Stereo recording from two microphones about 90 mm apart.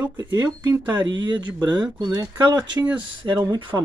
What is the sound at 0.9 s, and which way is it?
Speech, 60° right (ahead or behind).